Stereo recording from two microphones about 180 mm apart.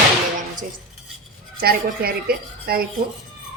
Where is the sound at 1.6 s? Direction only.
55° right (ahead or behind).